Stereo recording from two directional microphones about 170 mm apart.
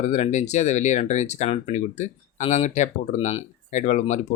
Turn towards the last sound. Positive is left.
turn(degrees=45)  # may be behind; listen again after turning